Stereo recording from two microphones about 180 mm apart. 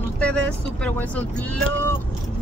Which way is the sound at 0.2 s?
5° left (ahead or behind).